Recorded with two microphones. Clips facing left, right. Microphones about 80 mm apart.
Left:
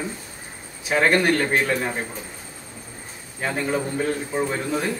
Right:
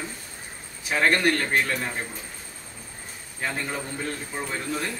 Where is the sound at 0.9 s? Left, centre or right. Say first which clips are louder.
Left 3 dB; centre.